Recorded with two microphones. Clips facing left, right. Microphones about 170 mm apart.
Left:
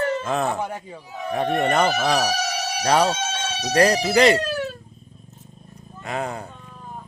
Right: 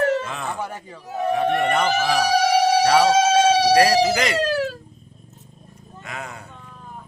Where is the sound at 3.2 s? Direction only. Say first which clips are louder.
Right 13 dB; 90° right.